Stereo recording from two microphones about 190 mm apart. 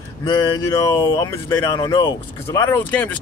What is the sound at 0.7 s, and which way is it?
Speech, 15° left (ahead or behind).